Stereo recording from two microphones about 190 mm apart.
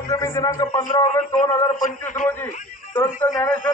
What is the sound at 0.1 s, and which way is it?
Speech, 15° left (ahead or behind).